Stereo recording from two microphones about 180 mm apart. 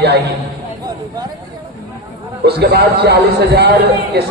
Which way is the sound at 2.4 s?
65° right (ahead or behind).